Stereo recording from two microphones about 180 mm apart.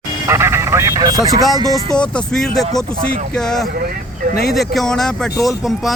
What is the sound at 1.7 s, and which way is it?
Speech, 5° left (ahead or behind).